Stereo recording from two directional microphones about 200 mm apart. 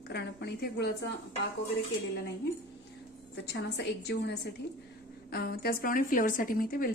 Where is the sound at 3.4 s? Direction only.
60° left (ahead or behind).